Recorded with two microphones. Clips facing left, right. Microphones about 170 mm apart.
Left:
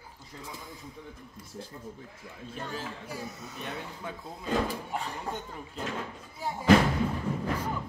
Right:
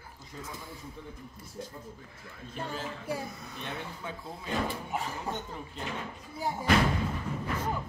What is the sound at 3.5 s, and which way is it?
Speech, centre (ahead or behind).